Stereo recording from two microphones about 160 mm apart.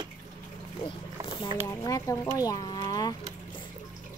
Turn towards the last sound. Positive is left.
turn(degrees=25)  # may be behind; listen again after turning